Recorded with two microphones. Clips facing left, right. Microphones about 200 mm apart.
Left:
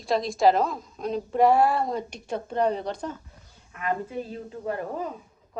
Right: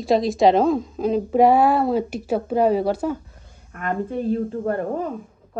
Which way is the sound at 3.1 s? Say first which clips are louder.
Right 11 dB; 50° right (ahead or behind).